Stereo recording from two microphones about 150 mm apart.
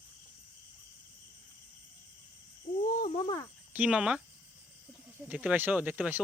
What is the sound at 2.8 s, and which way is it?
Cricket, 55° left (ahead or behind).